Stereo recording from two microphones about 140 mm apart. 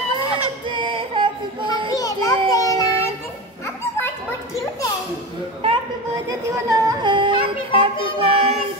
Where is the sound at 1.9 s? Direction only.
25° left (ahead or behind).